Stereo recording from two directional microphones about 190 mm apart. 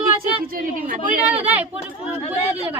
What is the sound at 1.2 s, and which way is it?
Speech, 10° right (ahead or behind).